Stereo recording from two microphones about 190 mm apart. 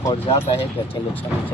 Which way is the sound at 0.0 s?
30° left (ahead or behind).